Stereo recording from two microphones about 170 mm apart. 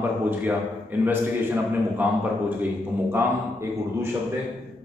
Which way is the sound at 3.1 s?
15° right (ahead or behind).